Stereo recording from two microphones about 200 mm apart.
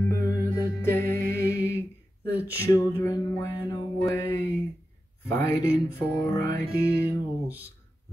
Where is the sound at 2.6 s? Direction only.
15° left (ahead or behind).